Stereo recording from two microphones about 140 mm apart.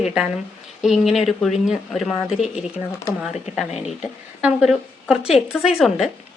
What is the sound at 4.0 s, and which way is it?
Speech, 5° right (ahead or behind).